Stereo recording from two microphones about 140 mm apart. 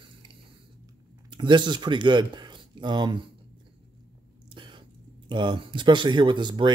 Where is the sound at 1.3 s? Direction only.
35° right (ahead or behind).